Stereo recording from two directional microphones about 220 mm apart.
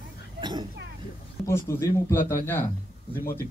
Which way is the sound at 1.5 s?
10° left (ahead or behind).